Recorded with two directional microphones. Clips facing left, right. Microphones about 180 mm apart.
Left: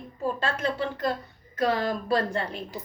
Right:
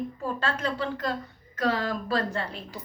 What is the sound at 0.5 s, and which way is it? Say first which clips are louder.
A woman's voice: left 1 dB; 10° left (ahead or behind).